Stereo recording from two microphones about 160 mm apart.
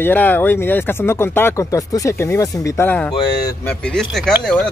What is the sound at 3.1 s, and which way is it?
Speech, 30° left (ahead or behind).